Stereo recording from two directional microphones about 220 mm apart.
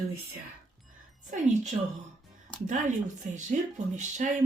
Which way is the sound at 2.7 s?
35° right (ahead or behind).